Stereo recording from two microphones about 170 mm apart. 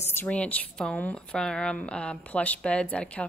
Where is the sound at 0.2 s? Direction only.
10° left (ahead or behind).